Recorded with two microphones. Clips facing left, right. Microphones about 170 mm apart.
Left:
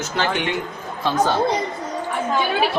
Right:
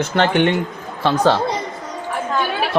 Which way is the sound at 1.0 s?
75° right (ahead or behind).